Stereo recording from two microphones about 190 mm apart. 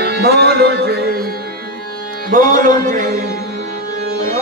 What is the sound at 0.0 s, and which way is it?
Music, 60° right (ahead or behind).